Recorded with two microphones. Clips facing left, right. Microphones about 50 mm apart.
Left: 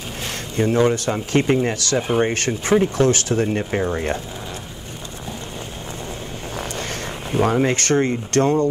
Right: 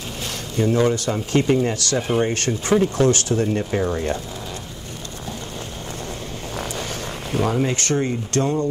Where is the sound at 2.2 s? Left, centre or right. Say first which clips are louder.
Left 1 dB; left.